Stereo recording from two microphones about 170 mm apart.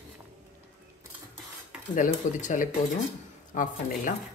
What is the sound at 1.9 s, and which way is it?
Speech, 45° left (ahead or behind).